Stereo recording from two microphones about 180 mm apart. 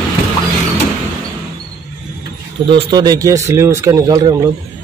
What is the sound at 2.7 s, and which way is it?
A man's voice, 25° right (ahead or behind).